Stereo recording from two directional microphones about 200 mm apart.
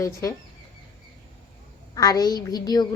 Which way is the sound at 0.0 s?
15° left (ahead or behind).